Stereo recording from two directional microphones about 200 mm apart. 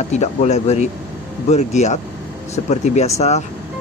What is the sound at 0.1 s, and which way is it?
Speech, 35° left (ahead or behind).